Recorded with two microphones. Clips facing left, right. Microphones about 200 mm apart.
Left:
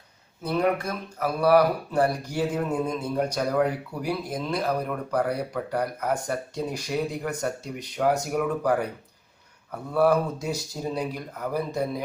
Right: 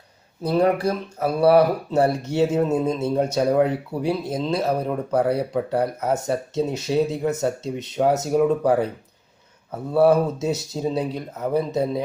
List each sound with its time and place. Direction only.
0.4 s speech: 35° right (ahead or behind)